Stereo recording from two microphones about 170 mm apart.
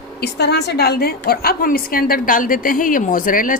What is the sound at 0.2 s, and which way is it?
A woman's voice, 75° left (ahead or behind).